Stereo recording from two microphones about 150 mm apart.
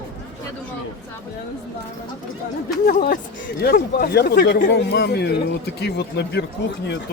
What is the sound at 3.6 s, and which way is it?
Speech, 90° left.